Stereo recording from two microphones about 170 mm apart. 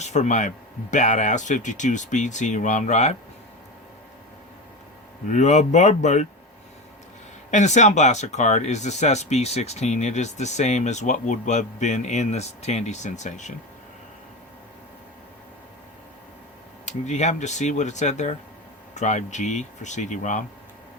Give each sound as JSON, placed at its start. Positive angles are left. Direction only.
{"t": 0.0, "sound": "speech", "side_deg": 45}
{"t": 5.3, "sound": "speech", "side_deg": 45}
{"t": 7.5, "sound": "speech", "side_deg": 45}
{"t": 16.8, "sound": "speech", "side_deg": 45}